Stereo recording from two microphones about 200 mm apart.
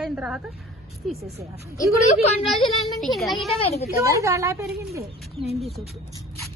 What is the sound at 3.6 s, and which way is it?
Speech, 30° left (ahead or behind).